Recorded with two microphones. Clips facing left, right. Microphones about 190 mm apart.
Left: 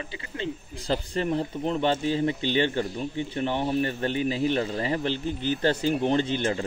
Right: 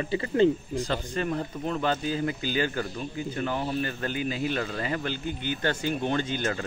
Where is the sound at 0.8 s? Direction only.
30° left (ahead or behind).